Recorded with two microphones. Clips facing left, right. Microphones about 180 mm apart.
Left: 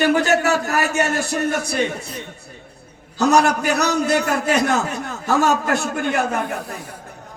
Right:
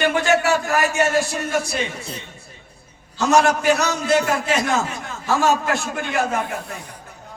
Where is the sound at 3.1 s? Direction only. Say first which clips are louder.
Left 1 dB; 40° left (ahead or behind).